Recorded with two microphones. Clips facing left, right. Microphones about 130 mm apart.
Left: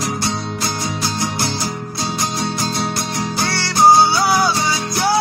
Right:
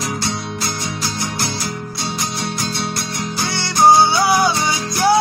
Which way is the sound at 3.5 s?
20° right (ahead or behind).